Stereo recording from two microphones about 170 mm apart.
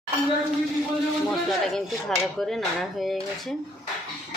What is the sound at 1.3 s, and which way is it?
Speech, 5° left (ahead or behind).